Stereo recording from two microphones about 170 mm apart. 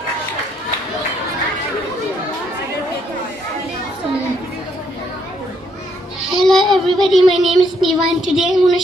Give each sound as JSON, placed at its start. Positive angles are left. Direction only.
{"t": 6.2, "sound": "child singing", "side_deg": 0}